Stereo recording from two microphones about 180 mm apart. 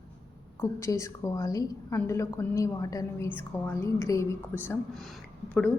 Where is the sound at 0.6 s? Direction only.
15° left (ahead or behind).